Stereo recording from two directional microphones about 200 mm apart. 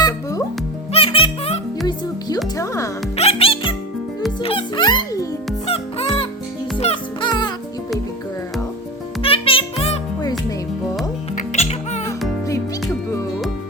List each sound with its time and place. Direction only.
0.0 s music: 15° left (ahead or behind)
1.9 s music: 20° left (ahead or behind)
3.2 s music: 30° left (ahead or behind)
5.6 s music: 30° left (ahead or behind)
9.2 s music: 25° left (ahead or behind)
11.3 s music: 35° left (ahead or behind)